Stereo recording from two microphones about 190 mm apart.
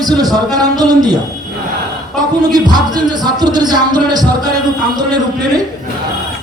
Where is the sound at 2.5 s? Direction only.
20° right (ahead or behind).